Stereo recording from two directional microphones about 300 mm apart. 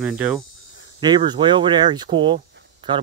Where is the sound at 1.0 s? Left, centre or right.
Centre.